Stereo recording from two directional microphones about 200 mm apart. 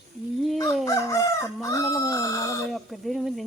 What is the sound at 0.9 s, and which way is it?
Speech, 15° left (ahead or behind).